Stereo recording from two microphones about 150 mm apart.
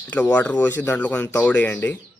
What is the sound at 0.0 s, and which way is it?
Speech, 10° left (ahead or behind).